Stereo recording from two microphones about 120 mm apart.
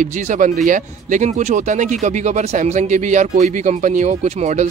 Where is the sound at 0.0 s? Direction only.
90° right.